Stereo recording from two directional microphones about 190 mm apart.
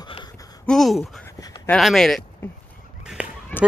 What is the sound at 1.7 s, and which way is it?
Speech, centre (ahead or behind).